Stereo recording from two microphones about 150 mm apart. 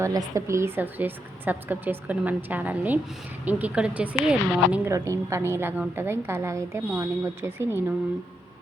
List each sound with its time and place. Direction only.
0.0 s a woman's voice: 20° right (ahead or behind)
4.9 s a woman's voice: 20° right (ahead or behind)